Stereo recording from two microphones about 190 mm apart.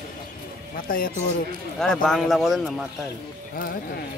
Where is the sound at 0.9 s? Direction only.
45° left (ahead or behind).